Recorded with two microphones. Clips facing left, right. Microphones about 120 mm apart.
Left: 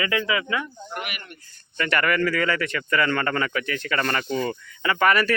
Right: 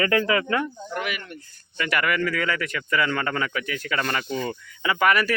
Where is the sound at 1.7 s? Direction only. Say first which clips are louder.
Left 2 dB; 5° right (ahead or behind).